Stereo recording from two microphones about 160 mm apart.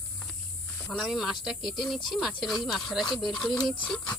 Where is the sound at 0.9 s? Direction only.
Centre (ahead or behind).